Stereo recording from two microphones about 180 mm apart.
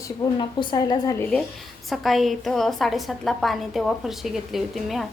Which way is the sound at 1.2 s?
5° left (ahead or behind).